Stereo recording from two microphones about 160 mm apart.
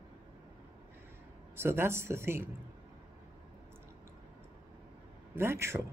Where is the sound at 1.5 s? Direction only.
15° right (ahead or behind).